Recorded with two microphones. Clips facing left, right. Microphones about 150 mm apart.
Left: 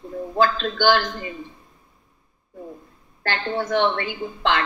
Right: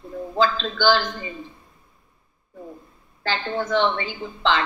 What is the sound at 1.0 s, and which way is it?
Speech, centre (ahead or behind).